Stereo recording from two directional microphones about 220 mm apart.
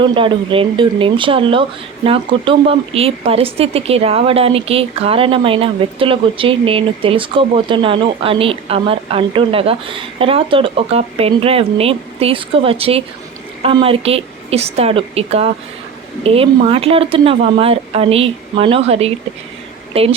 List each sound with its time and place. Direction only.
0.0 s a woman's voice: 20° right (ahead or behind)